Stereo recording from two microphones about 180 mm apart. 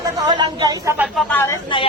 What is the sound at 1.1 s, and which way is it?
Speech, 10° left (ahead or behind).